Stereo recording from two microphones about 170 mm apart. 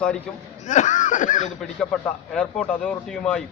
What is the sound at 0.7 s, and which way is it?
Speech, 45° left (ahead or behind).